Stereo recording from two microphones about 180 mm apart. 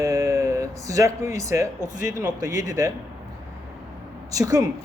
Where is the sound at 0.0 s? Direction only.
15° right (ahead or behind).